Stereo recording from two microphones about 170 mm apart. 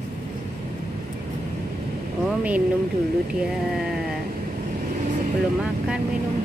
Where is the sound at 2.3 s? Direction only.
10° right (ahead or behind).